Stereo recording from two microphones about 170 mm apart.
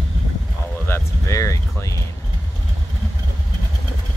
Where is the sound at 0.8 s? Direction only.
15° left (ahead or behind).